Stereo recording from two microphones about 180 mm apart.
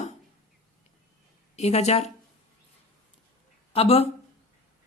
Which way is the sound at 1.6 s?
40° left (ahead or behind).